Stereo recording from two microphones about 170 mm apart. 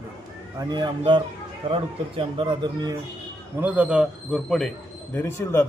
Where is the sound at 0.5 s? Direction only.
25° right (ahead or behind).